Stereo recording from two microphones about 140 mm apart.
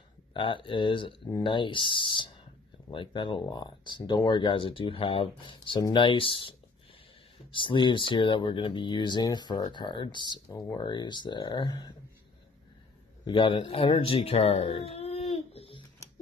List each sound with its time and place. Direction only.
0.3 s speech: 35° left (ahead or behind)
7.5 s speech: 35° left (ahead or behind)
13.2 s speech: 35° left (ahead or behind)
15.3 s a sound: 45° left (ahead or behind)